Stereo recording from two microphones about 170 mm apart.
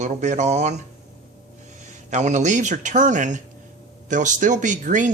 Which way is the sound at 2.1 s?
45° right (ahead or behind).